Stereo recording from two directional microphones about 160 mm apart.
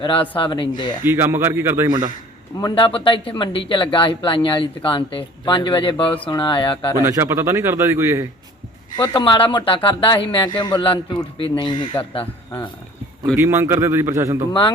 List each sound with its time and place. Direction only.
0.0 s speech: 35° left (ahead or behind)
1.0 s a man's voice: 15° right (ahead or behind)
2.6 s speech: 25° left (ahead or behind)
7.0 s a man's voice: 15° right (ahead or behind)
9.0 s speech: 30° left (ahead or behind)
13.3 s a man's voice: 15° right (ahead or behind)